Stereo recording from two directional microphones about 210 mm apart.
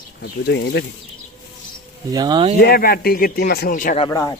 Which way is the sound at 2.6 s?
45° left (ahead or behind).